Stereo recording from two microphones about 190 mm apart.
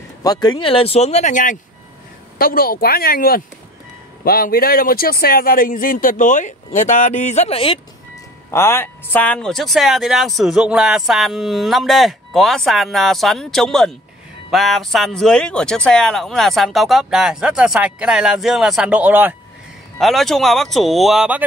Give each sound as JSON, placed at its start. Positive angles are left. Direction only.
{"t": 0.2, "sound": "speech", "side_deg": 20}
{"t": 8.5, "sound": "speech", "side_deg": 15}